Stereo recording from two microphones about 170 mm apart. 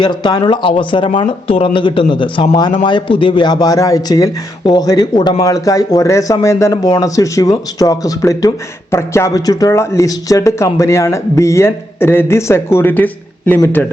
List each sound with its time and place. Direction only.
0.0 s speech: 25° left (ahead or behind)